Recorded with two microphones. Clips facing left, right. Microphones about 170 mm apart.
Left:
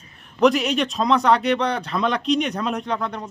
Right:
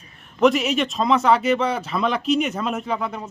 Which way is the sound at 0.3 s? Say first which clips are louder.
Even; centre (ahead or behind).